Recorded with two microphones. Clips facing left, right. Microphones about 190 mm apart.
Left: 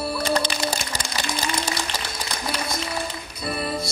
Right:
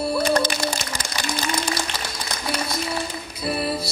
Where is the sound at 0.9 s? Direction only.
40° left (ahead or behind).